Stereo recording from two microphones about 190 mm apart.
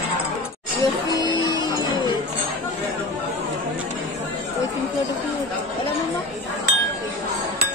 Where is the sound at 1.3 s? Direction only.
25° left (ahead or behind).